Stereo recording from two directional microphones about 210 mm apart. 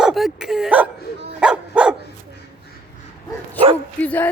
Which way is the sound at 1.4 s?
5° right (ahead or behind).